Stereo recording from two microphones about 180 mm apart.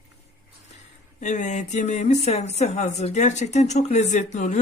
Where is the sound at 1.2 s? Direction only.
40° left (ahead or behind).